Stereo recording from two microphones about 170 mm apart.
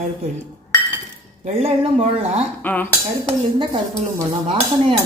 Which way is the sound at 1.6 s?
40° right (ahead or behind).